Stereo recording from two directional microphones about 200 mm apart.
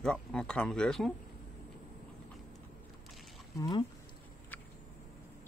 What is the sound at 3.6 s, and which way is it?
Speech, 25° left (ahead or behind).